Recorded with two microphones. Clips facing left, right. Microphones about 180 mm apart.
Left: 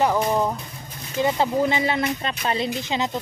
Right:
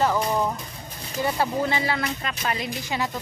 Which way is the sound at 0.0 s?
15° left (ahead or behind).